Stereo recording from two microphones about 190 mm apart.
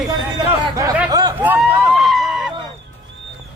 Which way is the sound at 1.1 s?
20° right (ahead or behind).